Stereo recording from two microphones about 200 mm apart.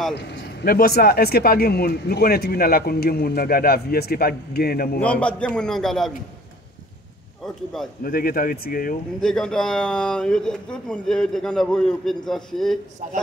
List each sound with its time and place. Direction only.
0.1 s speech: 55° left (ahead or behind)
5.0 s speech: 5° left (ahead or behind)
7.4 s speech: centre (ahead or behind)
8.0 s speech: 45° left (ahead or behind)
9.2 s speech: 5° left (ahead or behind)